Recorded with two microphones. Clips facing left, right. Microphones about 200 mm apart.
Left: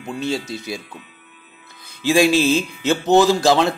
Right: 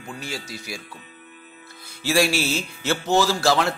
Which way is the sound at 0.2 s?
25° left (ahead or behind).